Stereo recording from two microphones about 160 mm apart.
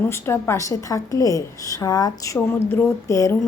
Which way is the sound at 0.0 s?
15° left (ahead or behind).